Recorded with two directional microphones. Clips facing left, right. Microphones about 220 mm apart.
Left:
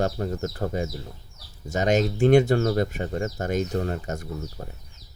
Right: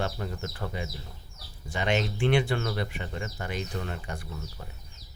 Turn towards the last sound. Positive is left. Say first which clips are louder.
# left 7 dB
turn(degrees=40)  # may be behind; listen again after turning